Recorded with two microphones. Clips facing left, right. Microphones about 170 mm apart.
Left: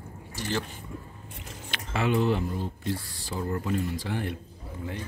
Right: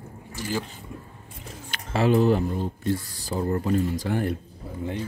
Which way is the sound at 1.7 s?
35° right (ahead or behind).